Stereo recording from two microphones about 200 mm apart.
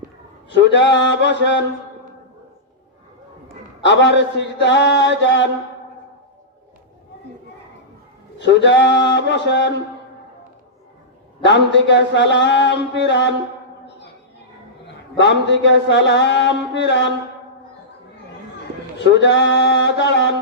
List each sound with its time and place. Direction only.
0.5 s mantra: 60° left (ahead or behind)
3.8 s mantra: 60° left (ahead or behind)
8.4 s mantra: 60° left (ahead or behind)
11.4 s mantra: 65° left (ahead or behind)
15.2 s mantra: 60° left (ahead or behind)
18.9 s mantra: 60° left (ahead or behind)